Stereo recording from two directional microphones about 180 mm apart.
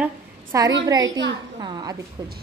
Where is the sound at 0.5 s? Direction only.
15° right (ahead or behind).